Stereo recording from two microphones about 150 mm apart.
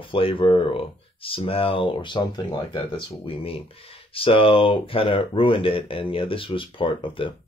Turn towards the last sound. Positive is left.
turn(degrees=35)  # may be behind; listen again after turning